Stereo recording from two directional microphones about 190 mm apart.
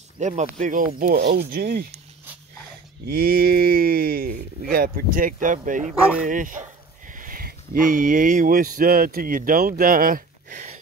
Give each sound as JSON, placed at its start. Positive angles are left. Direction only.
{"t": 0.2, "sound": "speech", "side_deg": -35}
{"t": 3.1, "sound": "speech", "side_deg": -50}